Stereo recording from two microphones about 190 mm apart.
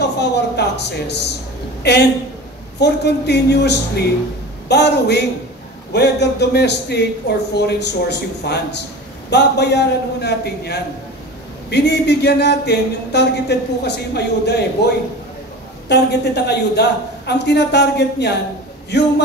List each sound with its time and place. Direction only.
0.2 s a woman's voice: 60° left (ahead or behind)
15.9 s speech: 60° left (ahead or behind)